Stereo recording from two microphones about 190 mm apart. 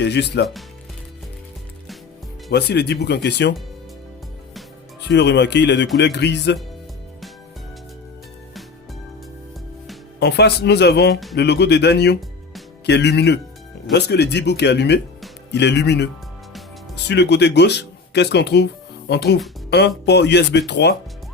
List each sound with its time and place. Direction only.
0.0 s speech: 60° left (ahead or behind)
2.5 s speech: 60° left (ahead or behind)
5.0 s speech: 65° left (ahead or behind)
10.2 s speech: 60° left (ahead or behind)